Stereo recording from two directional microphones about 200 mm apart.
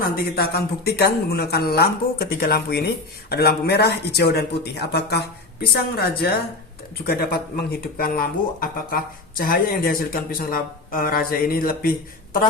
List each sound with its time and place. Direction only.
0.0 s speech: 50° left (ahead or behind)